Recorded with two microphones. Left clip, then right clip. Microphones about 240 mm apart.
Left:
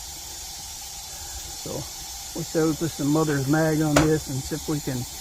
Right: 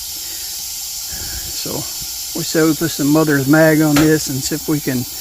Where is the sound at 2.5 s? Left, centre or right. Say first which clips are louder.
Right 9 dB; right.